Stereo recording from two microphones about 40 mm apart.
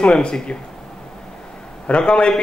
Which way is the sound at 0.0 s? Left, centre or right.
Centre.